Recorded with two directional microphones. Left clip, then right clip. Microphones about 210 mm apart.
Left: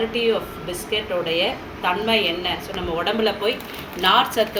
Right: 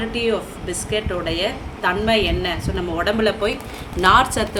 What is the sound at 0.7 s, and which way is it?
A woman's voice, 40° right (ahead or behind).